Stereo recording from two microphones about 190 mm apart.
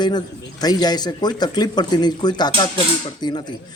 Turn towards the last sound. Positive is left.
turn(degrees=20)  # may be behind; listen again after turning